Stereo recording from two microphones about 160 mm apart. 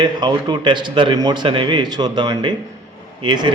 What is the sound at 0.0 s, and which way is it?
A man's voice, 25° right (ahead or behind).